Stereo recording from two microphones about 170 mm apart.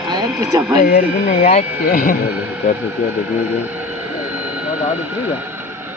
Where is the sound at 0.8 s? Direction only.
50° left (ahead or behind).